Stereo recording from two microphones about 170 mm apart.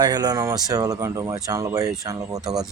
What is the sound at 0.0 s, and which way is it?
A man's voice, 25° right (ahead or behind).